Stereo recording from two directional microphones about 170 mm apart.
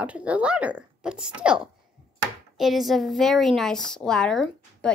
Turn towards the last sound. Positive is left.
turn(degrees=5)  # may be behind; listen again after turning